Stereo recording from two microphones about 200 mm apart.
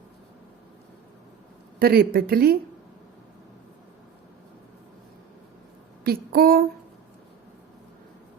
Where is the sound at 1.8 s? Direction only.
50° right (ahead or behind).